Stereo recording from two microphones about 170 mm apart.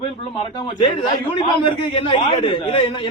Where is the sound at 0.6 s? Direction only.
25° left (ahead or behind).